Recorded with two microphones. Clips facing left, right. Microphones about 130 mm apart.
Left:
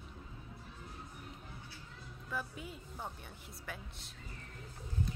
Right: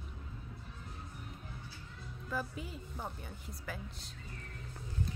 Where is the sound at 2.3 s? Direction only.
Centre (ahead or behind).